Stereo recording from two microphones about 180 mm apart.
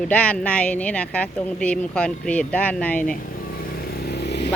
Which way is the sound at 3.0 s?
50° left (ahead or behind).